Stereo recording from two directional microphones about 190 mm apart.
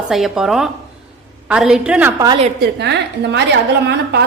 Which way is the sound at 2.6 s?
65° right (ahead or behind).